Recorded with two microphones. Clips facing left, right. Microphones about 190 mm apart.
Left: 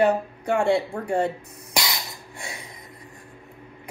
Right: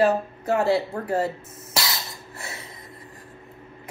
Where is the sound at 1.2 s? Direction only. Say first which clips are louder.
Left 1 dB; 20° left (ahead or behind).